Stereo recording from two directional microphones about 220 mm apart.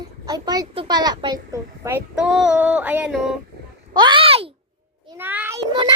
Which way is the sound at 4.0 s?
20° right (ahead or behind).